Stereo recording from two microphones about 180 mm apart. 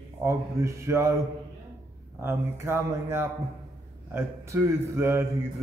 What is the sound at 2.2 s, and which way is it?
A man's voice, 15° right (ahead or behind).